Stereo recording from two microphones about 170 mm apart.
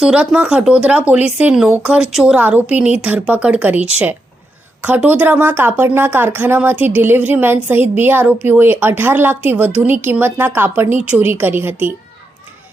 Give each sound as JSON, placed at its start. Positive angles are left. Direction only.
{"t": 0.0, "sound": "a woman's voice", "side_deg": -5}